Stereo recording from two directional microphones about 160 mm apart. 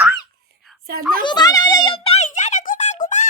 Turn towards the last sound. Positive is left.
turn(degrees=50)  # may be behind; listen again after turning